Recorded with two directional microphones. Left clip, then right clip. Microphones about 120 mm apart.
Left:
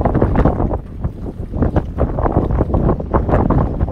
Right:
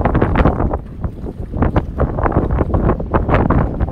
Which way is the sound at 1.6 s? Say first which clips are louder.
Right 1 dB; 10° left (ahead or behind).